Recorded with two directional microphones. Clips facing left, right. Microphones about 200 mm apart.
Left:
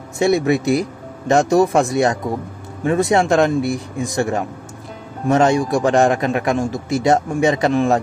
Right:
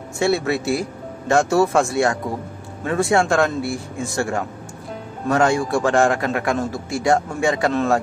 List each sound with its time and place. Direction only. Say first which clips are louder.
0.2 s a man's voice: left 4 dB; 20° left (ahead or behind)